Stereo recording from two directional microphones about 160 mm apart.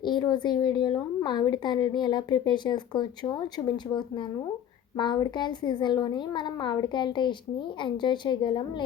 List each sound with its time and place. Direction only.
0.0 s a woman's voice: 30° left (ahead or behind)
4.9 s a woman's voice: 25° left (ahead or behind)